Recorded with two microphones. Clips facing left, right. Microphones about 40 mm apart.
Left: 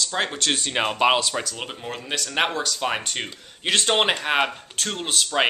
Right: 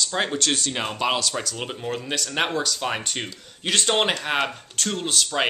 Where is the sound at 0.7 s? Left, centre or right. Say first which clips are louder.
Left 5 dB; left.